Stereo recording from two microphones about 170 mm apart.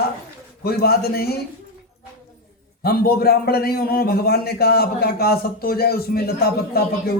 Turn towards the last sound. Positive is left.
turn(degrees=65)  # may be behind; listen again after turning